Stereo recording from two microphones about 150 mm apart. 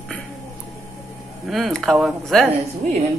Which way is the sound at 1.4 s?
Centre (ahead or behind).